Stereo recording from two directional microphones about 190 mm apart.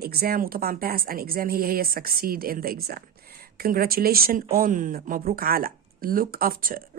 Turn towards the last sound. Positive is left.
turn(degrees=-50)  # may be behind; listen again after turning